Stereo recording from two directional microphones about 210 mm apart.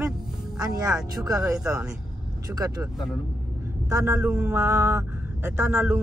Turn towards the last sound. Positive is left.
turn(degrees=-10)  # may be behind; listen again after turning